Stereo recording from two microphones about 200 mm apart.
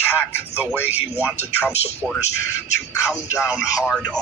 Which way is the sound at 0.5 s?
10° right (ahead or behind).